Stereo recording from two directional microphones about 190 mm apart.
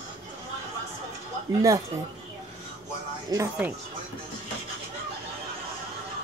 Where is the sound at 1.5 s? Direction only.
20° right (ahead or behind).